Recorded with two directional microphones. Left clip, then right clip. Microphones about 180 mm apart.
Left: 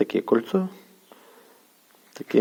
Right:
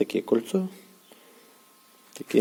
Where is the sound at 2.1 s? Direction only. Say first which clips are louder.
Left 2 dB; 5° right (ahead or behind).